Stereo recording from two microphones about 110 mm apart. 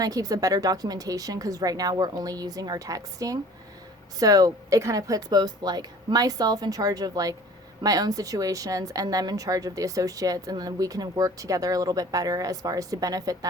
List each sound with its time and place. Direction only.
0.0 s a woman's voice: 35° right (ahead or behind)